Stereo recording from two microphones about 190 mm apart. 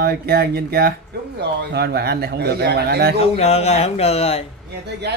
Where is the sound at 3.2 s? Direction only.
35° left (ahead or behind).